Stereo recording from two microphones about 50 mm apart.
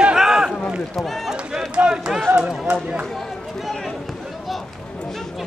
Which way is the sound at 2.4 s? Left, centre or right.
Centre.